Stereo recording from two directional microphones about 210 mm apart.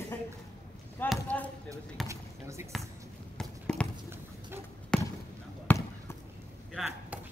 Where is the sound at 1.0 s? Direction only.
5° left (ahead or behind).